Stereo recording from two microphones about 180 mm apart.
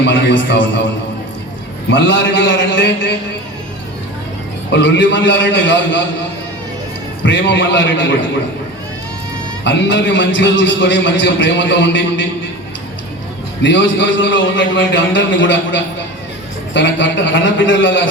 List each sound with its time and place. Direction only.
0.0 s a man's voice: 80° left
1.9 s a man's voice: 80° left
4.7 s a man's voice: 80° left
7.3 s a man's voice: 85° left
9.6 s a man's voice: 85° left
13.6 s a man's voice: 85° left